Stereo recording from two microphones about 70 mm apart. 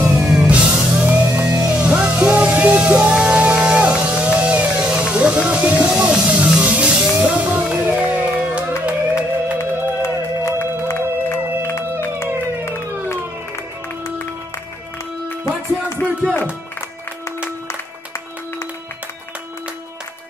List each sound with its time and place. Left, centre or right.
0.3 s music: centre
9.6 s music: left
11.7 s music: left